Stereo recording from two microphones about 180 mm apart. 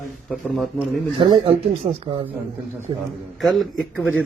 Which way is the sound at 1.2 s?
30° right (ahead or behind).